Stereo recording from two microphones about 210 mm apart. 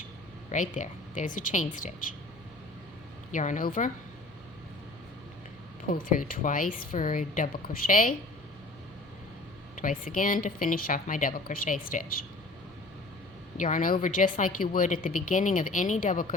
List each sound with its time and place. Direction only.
0.5 s speech: 35° left (ahead or behind)
3.3 s speech: 35° left (ahead or behind)
5.9 s speech: 40° left (ahead or behind)
9.7 s speech: 40° left (ahead or behind)
13.6 s speech: 35° left (ahead or behind)